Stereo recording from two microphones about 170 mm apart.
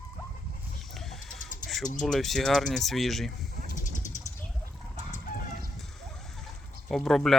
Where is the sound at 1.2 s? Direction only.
50° left (ahead or behind).